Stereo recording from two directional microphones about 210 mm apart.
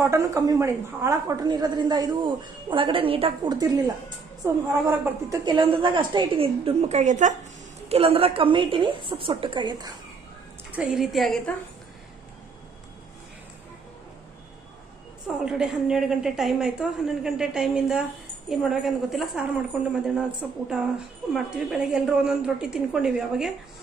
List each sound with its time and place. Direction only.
0.0 s a woman's voice: 15° right (ahead or behind)
10.7 s a woman's voice: 5° right (ahead or behind)
15.4 s a woman's voice: 5° right (ahead or behind)